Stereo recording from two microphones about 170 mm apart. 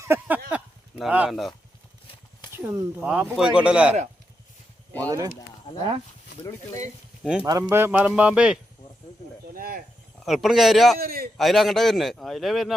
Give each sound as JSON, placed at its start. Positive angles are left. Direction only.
{"t": 0.0, "sound": "a sound", "side_deg": -10}
{"t": 0.9, "sound": "a man's voice", "side_deg": -5}
{"t": 2.6, "sound": "a man's voice", "side_deg": -5}
{"t": 5.0, "sound": "speech", "side_deg": -20}
{"t": 7.4, "sound": "speech", "side_deg": -15}
{"t": 9.6, "sound": "a sound", "side_deg": -55}
{"t": 10.2, "sound": "a man's voice", "side_deg": 0}
{"t": 11.0, "sound": "a man's voice", "side_deg": -60}
{"t": 11.3, "sound": "a man's voice", "side_deg": 0}